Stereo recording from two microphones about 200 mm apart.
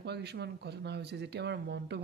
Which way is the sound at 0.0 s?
55° right (ahead or behind).